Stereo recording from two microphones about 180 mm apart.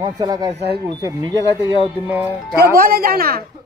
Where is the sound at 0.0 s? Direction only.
20° right (ahead or behind).